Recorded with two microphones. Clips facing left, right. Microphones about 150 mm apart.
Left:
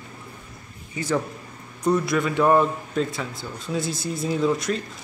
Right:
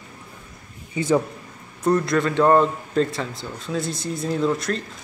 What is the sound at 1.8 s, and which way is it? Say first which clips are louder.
Speech: right 2 dB; centre (ahead or behind).